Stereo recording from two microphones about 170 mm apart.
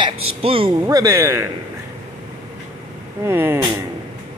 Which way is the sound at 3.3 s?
15° right (ahead or behind).